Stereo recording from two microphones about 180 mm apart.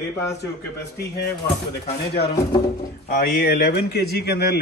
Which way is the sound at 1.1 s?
65° left (ahead or behind).